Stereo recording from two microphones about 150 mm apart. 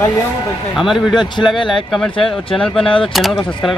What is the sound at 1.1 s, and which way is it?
Speech, 30° left (ahead or behind).